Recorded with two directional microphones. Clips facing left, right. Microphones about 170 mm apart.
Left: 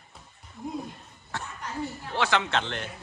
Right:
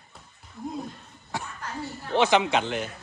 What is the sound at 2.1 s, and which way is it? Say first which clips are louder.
Speech: right 5 dB; 20° right (ahead or behind).